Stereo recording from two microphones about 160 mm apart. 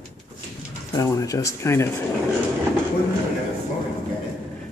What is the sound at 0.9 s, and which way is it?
Speech, 20° left (ahead or behind).